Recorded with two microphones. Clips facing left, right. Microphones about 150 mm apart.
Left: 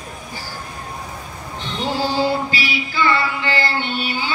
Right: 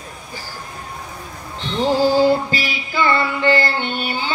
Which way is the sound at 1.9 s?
45° right (ahead or behind).